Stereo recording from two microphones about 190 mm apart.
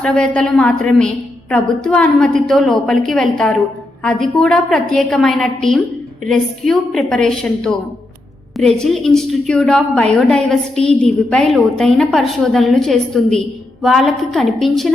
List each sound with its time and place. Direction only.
0.0 s a woman's voice: 5° left (ahead or behind)